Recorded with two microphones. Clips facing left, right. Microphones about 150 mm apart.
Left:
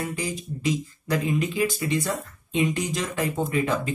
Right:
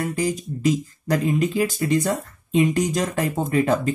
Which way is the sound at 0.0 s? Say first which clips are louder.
Right 6 dB; 45° right (ahead or behind).